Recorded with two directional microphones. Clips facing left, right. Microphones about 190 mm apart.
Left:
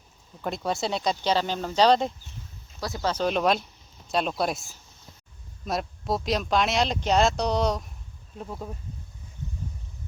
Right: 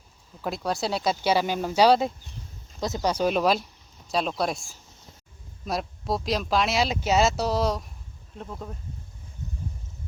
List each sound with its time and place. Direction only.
0.4 s speech: centre (ahead or behind)
2.8 s speech: 20° right (ahead or behind); by 8.7 s 10° left (ahead or behind)